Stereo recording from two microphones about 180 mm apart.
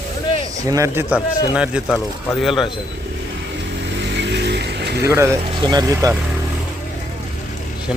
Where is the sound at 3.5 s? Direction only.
75° right (ahead or behind).